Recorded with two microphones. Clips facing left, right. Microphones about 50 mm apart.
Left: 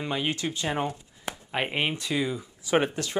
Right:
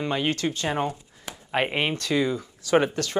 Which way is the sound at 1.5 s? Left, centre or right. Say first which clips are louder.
Right 5 dB; centre.